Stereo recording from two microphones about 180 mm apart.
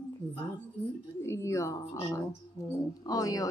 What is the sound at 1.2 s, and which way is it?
A woman's voice, 15° left (ahead or behind).